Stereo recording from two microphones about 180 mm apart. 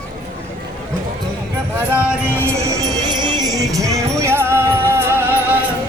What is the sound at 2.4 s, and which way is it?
Music, 20° right (ahead or behind).